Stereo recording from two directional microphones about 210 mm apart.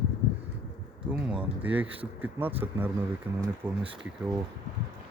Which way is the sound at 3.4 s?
25° right (ahead or behind).